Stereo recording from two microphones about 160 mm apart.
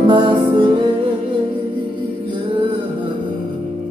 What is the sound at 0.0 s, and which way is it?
Music, 30° right (ahead or behind).